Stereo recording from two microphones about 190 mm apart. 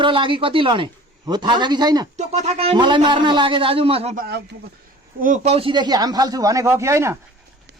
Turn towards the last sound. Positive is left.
turn(degrees=-15)  # may be behind; listen again after turning